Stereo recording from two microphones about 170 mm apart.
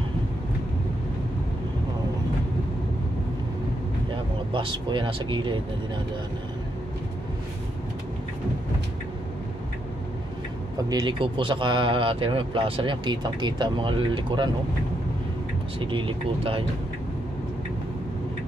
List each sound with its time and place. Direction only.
4.5 s speech: 30° right (ahead or behind)
10.8 s speech: 25° right (ahead or behind)
15.8 s speech: 30° right (ahead or behind)